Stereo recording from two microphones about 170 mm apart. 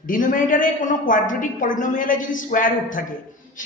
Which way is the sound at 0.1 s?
50° left (ahead or behind).